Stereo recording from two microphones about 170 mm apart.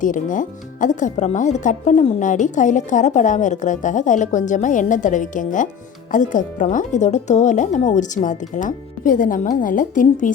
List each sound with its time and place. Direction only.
0.0 s speech: 50° left (ahead or behind)